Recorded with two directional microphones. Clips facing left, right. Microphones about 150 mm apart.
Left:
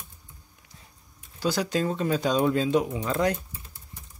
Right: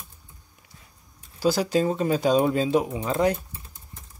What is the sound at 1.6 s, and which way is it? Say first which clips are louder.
Speech: right 4 dB; 5° right (ahead or behind).